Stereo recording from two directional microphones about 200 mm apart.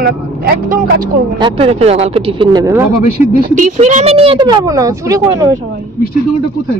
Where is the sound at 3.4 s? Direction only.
40° right (ahead or behind); by 5.6 s 15° right (ahead or behind).